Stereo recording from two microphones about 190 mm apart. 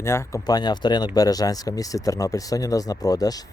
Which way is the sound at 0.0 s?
15° left (ahead or behind).